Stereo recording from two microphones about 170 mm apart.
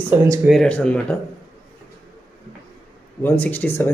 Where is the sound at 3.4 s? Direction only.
10° left (ahead or behind).